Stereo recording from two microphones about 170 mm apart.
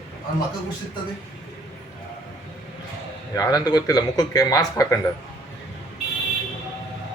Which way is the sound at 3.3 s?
20° left (ahead or behind).